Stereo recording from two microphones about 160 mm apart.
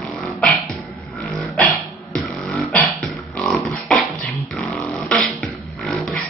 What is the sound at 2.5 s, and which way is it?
Beatboxing, 5° left (ahead or behind).